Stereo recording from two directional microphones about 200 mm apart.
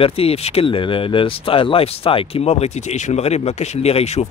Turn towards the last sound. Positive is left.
turn(degrees=30)  # may be behind; listen again after turning